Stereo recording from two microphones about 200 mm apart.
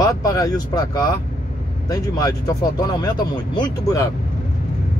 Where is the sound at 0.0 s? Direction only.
15° left (ahead or behind).